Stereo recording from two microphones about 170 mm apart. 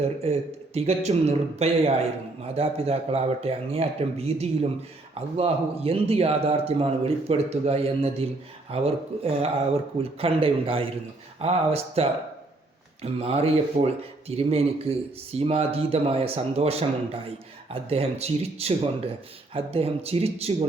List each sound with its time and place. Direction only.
0.0 s a man's voice: 40° right (ahead or behind)